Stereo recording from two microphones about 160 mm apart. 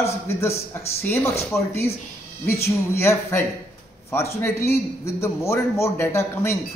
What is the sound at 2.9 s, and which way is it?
A man's voice, 15° left (ahead or behind).